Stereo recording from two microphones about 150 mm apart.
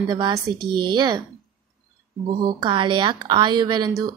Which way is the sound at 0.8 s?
25° right (ahead or behind).